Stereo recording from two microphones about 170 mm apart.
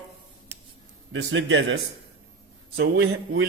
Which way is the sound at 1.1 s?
90° right.